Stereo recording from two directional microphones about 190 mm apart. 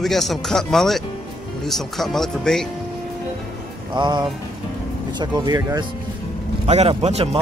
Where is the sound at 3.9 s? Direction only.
25° right (ahead or behind).